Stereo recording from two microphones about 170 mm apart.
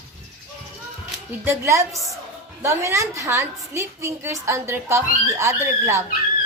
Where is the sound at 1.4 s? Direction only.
15° right (ahead or behind).